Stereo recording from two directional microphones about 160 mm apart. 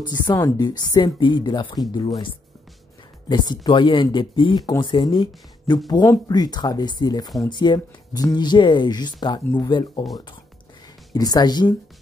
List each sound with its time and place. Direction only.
0.1 s speech: 25° left (ahead or behind)
3.3 s speech: 25° left (ahead or behind)
11.1 s speech: 25° left (ahead or behind)